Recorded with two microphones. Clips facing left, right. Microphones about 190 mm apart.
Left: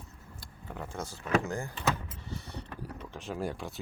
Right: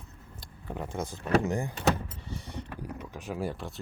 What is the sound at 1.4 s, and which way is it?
Speech, 20° right (ahead or behind).